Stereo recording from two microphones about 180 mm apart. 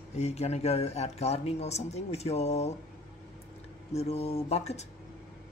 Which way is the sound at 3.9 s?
35° left (ahead or behind).